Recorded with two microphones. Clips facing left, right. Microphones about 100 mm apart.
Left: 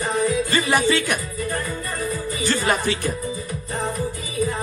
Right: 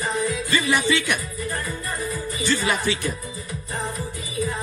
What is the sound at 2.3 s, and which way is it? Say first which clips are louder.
Speech: left 2 dB; 50° left (ahead or behind).